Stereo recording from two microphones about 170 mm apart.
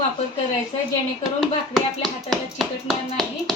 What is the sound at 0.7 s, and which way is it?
Speech, 35° left (ahead or behind).